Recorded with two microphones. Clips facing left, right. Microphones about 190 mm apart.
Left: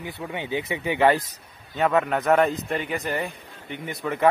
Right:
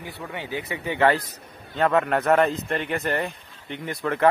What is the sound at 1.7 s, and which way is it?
A man's voice, centre (ahead or behind).